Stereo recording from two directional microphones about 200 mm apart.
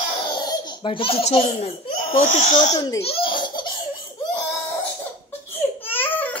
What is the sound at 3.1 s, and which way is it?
Laughter, 25° left (ahead or behind).